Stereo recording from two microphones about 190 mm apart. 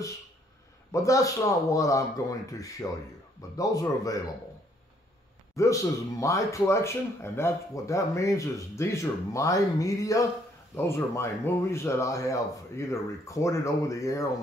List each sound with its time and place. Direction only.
0.9 s speech: 15° left (ahead or behind)
5.6 s speech: 15° left (ahead or behind)